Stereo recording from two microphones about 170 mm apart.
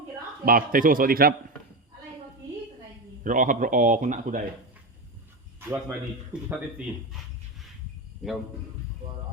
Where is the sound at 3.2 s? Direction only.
50° right (ahead or behind).